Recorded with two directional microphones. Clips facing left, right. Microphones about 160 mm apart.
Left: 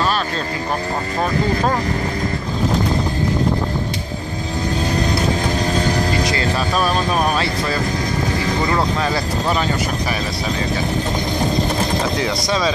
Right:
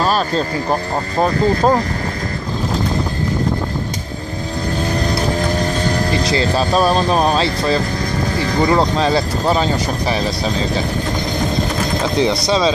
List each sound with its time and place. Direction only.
6.2 s speech: 30° right (ahead or behind)
12.2 s speech: 25° right (ahead or behind)